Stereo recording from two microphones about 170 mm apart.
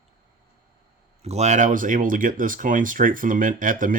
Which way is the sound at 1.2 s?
40° right (ahead or behind).